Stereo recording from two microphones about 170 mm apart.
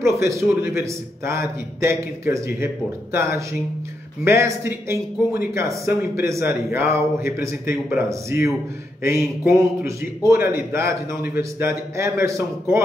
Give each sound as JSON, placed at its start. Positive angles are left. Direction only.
{"t": 0.2, "sound": "a man's voice", "side_deg": -15}